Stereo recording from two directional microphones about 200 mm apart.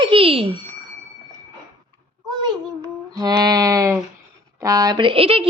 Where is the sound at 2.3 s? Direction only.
20° right (ahead or behind).